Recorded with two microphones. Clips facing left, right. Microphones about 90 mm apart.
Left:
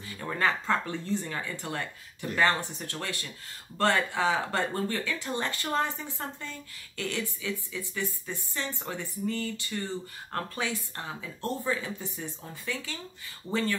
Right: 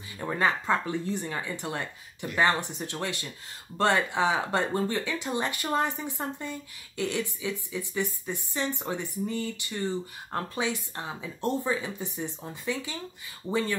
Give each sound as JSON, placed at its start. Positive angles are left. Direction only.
{"t": 0.2, "sound": "speech", "side_deg": -20}